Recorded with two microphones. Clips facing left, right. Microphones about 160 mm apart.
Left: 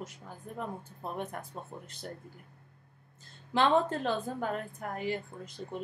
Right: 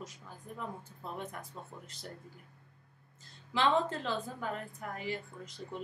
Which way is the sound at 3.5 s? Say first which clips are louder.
Left 3 dB; 55° left (ahead or behind).